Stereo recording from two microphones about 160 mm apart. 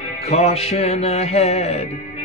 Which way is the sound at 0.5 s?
40° left (ahead or behind).